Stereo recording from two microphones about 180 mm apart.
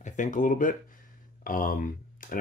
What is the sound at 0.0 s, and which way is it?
Speech, 45° left (ahead or behind).